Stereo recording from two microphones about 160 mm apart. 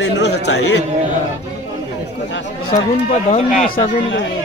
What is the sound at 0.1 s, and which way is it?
Speech, 90° left.